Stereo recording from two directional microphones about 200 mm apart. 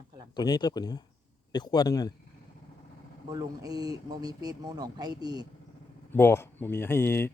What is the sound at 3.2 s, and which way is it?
Speech, 15° right (ahead or behind).